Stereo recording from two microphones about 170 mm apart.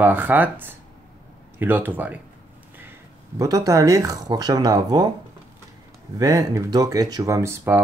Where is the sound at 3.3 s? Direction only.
20° right (ahead or behind).